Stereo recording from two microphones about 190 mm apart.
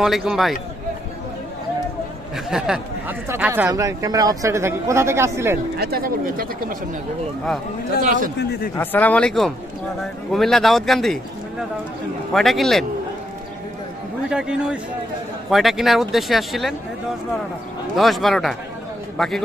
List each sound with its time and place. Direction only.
0.0 s speech: centre (ahead or behind)
2.3 s speech: 5° right (ahead or behind)
5.8 s speech: 55° right (ahead or behind)
8.4 s a man's voice: 50° left (ahead or behind)
8.7 s speech: 10° left (ahead or behind)
12.3 s speech: centre (ahead or behind)
14.3 s speech: 5° right (ahead or behind)
17.9 s a man's voice: centre (ahead or behind)